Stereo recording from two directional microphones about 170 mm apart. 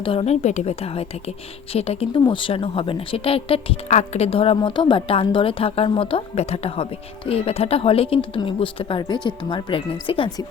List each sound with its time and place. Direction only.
0.0 s speech: 35° left (ahead or behind)